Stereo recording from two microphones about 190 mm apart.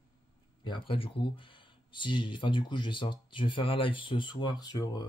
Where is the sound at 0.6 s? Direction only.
25° left (ahead or behind).